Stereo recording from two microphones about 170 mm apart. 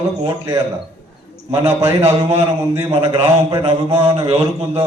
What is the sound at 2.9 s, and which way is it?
A man's voice, 30° right (ahead or behind).